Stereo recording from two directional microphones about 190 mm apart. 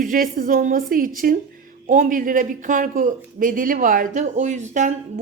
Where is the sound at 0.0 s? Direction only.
45° right (ahead or behind).